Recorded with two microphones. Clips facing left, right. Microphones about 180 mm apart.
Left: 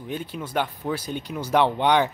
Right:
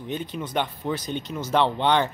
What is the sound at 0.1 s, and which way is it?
Speech, 5° left (ahead or behind).